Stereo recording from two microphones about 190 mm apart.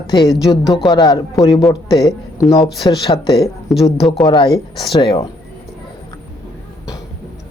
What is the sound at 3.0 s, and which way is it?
Speech, 30° left (ahead or behind).